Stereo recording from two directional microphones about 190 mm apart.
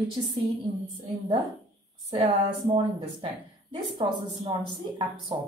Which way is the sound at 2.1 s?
30° right (ahead or behind).